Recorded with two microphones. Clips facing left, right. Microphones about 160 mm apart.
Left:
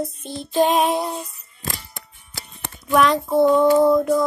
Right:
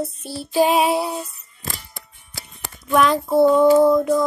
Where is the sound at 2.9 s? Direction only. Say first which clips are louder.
Even; centre (ahead or behind).